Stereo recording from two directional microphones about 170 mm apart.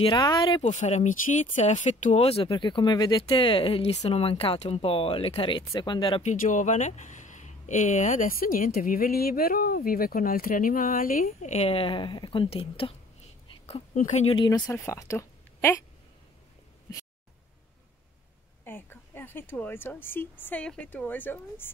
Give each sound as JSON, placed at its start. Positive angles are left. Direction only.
{"t": 0.0, "sound": "speech", "side_deg": 25}
{"t": 0.7, "sound": "speech", "side_deg": 45}
{"t": 6.2, "sound": "speech", "side_deg": 45}
{"t": 14.3, "sound": "a woman's voice", "side_deg": 25}
{"t": 18.6, "sound": "speech", "side_deg": 10}